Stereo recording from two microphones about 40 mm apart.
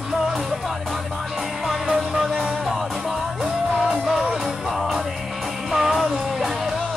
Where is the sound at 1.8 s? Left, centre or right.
Centre.